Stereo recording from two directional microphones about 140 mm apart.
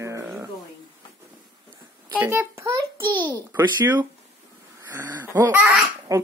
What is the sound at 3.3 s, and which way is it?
Speech, 20° right (ahead or behind).